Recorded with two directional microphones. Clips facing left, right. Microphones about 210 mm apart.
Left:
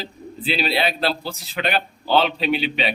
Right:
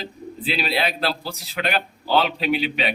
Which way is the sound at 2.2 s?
30° left (ahead or behind).